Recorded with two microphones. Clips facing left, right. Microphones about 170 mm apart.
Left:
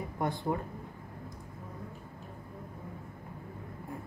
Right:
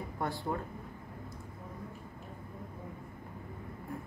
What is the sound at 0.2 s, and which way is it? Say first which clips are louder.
Speech: left 3 dB; 20° left (ahead or behind).